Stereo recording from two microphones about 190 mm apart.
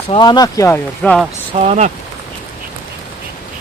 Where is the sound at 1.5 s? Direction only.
35° right (ahead or behind).